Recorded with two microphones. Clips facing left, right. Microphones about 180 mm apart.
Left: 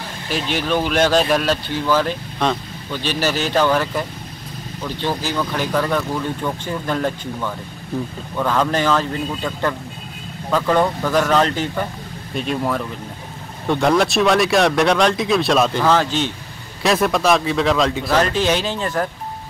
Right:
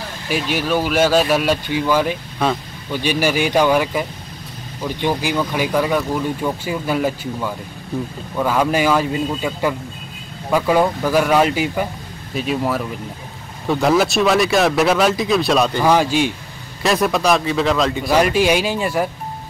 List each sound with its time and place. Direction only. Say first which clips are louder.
0.3 s speech: right 1 dB; 10° right (ahead or behind)
15.8 s speech: right 2 dB; 10° right (ahead or behind)
16.8 s speech: even; centre (ahead or behind)
18.1 s speech: right 4 dB; 10° right (ahead or behind)